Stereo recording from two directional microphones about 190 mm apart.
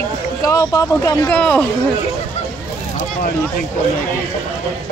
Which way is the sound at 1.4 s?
5° left (ahead or behind).